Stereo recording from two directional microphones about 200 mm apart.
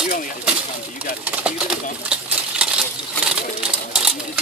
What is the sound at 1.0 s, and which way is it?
Speech, 10° right (ahead or behind).